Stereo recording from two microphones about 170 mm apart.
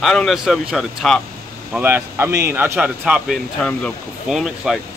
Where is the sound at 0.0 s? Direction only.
Centre (ahead or behind).